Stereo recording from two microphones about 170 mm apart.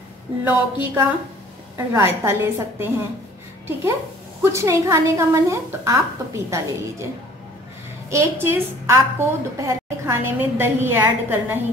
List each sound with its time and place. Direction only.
0.4 s a woman's voice: 10° right (ahead or behind)
4.4 s a woman's voice: 15° right (ahead or behind)
8.1 s a woman's voice: 15° right (ahead or behind)